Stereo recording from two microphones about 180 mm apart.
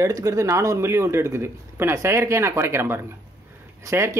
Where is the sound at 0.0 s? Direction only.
20° right (ahead or behind).